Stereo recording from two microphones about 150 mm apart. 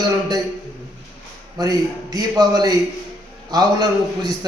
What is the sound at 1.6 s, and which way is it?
A man's voice, 25° right (ahead or behind).